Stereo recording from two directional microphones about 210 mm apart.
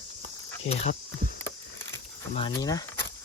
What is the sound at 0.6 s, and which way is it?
Speech, 30° left (ahead or behind).